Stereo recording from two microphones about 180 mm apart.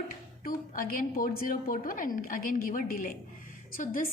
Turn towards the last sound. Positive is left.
turn(degrees=50)  # may be behind; listen again after turning